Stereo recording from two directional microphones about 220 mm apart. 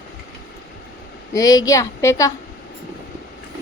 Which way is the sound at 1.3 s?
15° left (ahead or behind).